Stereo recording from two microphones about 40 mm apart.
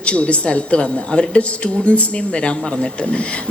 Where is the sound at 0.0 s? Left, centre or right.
Left.